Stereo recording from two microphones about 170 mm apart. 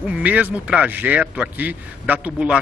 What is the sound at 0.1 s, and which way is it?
A man's voice, 10° right (ahead or behind).